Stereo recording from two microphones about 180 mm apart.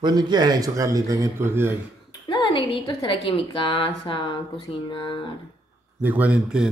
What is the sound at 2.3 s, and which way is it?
A woman's voice, 25° left (ahead or behind).